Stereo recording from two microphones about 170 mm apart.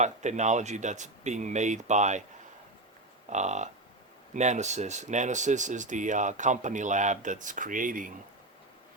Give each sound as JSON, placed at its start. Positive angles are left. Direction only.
{"t": 0.0, "sound": "speech", "side_deg": -45}
{"t": 3.2, "sound": "speech", "side_deg": -45}